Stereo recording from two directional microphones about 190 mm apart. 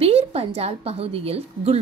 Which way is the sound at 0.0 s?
30° right (ahead or behind).